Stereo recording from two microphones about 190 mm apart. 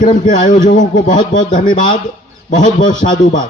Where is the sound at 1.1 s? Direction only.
25° left (ahead or behind).